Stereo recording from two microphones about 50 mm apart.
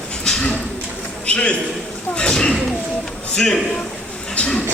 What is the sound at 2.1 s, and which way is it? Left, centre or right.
A man's voice, centre.